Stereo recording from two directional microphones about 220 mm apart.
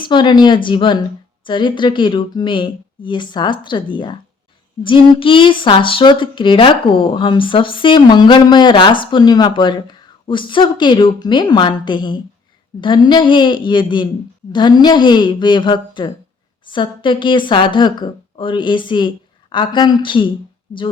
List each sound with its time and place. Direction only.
0.1 s speech: 20° left (ahead or behind)